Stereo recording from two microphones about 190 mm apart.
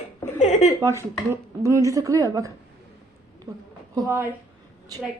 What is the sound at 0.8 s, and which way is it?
A woman's voice, 15° right (ahead or behind).